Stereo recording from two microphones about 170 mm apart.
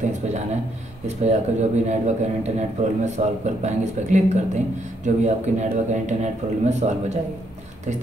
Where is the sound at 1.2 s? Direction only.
40° right (ahead or behind).